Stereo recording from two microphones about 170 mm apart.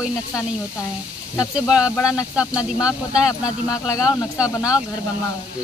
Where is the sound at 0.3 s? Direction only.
20° left (ahead or behind).